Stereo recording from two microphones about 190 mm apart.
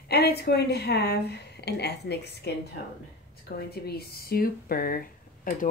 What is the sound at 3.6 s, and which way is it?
A woman's voice, 55° left (ahead or behind).